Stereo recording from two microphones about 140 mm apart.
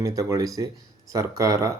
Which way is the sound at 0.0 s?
25° right (ahead or behind).